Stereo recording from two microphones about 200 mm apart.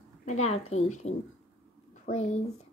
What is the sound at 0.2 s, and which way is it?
Speech, 35° left (ahead or behind).